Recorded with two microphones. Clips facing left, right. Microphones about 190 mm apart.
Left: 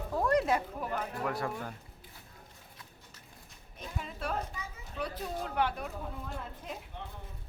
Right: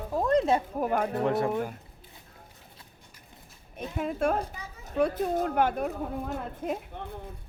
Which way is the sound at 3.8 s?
55° right (ahead or behind).